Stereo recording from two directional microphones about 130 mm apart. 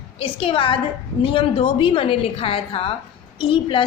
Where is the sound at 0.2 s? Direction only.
45° left (ahead or behind).